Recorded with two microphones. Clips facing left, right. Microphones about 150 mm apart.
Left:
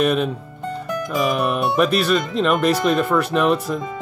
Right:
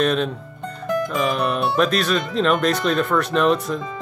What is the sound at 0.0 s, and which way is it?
Speech, 5° left (ahead or behind).